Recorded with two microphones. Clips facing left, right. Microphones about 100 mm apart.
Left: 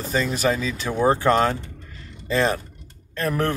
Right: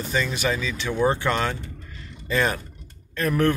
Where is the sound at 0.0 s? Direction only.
40° left (ahead or behind).